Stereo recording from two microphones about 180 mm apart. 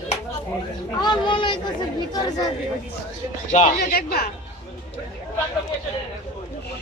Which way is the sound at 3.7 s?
60° left (ahead or behind).